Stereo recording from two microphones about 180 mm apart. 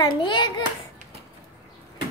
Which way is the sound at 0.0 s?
25° left (ahead or behind).